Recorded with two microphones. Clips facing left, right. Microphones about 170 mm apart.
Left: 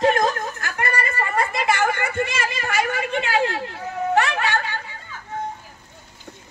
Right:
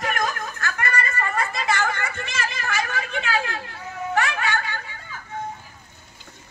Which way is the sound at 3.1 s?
25° left (ahead or behind).